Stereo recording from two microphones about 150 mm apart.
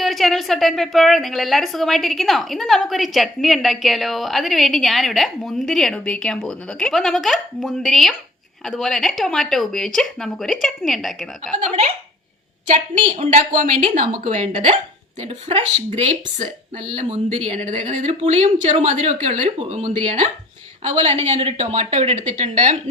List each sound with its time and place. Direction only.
0.0 s a woman's voice: centre (ahead or behind)
11.5 s speech: 50° right (ahead or behind)
14.4 s speech: 45° right (ahead or behind)